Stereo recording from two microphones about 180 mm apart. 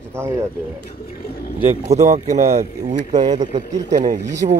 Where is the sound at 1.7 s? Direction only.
40° right (ahead or behind).